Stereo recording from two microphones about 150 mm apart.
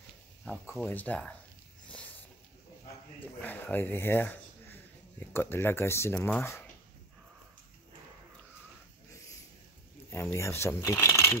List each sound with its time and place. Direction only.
0.5 s speech: 10° left (ahead or behind)
1.9 s a sound: 10° left (ahead or behind)
3.2 s speech: 10° left (ahead or behind)
10.1 s speech: 20° left (ahead or behind)